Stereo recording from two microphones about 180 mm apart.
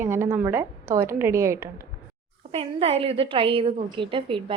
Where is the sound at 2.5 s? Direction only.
35° right (ahead or behind).